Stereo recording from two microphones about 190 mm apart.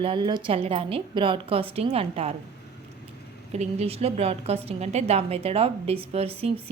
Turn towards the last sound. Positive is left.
turn(degrees=-30)  # may be behind; listen again after turning